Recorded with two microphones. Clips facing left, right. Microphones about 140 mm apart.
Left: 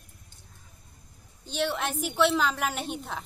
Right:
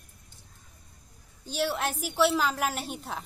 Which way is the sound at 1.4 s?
5° right (ahead or behind).